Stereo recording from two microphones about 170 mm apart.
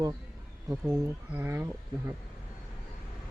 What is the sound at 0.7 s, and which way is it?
Speech, 15° right (ahead or behind).